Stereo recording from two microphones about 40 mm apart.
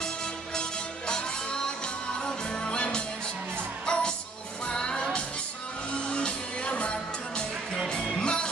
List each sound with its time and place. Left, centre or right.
0.6 s music: centre